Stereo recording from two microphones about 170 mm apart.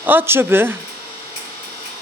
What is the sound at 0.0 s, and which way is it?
Speech, 10° right (ahead or behind).